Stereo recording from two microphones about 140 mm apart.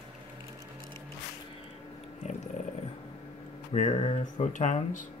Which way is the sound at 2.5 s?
60° left (ahead or behind).